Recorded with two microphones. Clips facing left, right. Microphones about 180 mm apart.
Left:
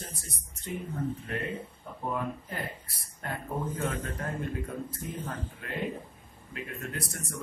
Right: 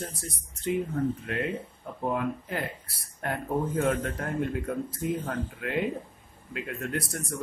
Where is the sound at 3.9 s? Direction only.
70° right (ahead or behind).